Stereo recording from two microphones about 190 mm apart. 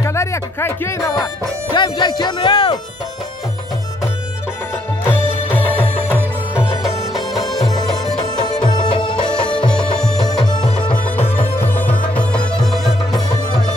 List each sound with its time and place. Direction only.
0.0 s speech: 15° left (ahead or behind)
5.5 s music: 10° left (ahead or behind)
7.2 s music: 20° left (ahead or behind)
8.6 s music: 25° left (ahead or behind)
9.7 s music: 5° left (ahead or behind)
10.2 s music: 20° left (ahead or behind)
11.6 s music: 10° left (ahead or behind)